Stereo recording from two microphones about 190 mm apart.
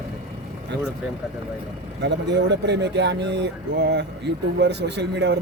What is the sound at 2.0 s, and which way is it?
Speech, 65° right (ahead or behind).